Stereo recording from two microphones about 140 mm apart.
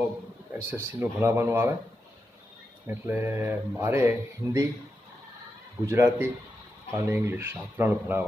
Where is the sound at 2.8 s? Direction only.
15° right (ahead or behind).